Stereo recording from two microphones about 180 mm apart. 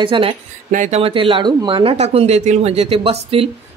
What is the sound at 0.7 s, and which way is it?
Speech, 40° right (ahead or behind).